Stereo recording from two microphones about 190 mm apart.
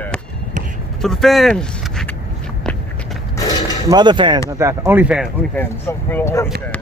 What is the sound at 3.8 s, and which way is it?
Speech, 20° right (ahead or behind).